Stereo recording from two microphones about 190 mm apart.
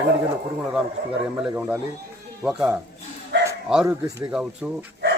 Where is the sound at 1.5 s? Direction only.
10° right (ahead or behind).